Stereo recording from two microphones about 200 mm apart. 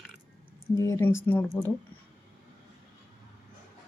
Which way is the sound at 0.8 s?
15° left (ahead or behind).